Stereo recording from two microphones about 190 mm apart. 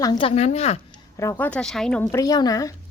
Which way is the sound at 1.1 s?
15° left (ahead or behind).